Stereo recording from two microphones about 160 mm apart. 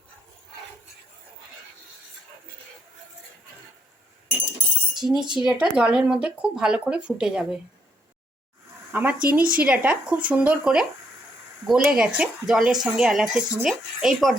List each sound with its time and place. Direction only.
4.9 s speech: 5° right (ahead or behind)
8.9 s speech: 10° right (ahead or behind)